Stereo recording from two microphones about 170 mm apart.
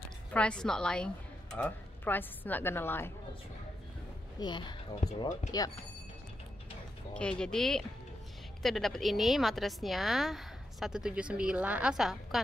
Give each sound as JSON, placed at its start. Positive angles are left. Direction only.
{"t": 0.3, "sound": "a woman's voice", "side_deg": 5}
{"t": 4.4, "sound": "speech", "side_deg": 25}
{"t": 5.0, "sound": "speech", "side_deg": 40}
{"t": 5.5, "sound": "speech", "side_deg": 20}
{"t": 7.2, "sound": "speech", "side_deg": 5}